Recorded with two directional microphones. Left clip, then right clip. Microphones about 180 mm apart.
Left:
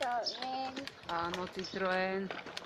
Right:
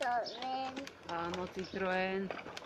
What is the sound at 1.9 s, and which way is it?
Speech, 25° right (ahead or behind).